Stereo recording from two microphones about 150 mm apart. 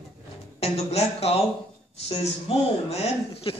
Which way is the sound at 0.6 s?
45° left (ahead or behind).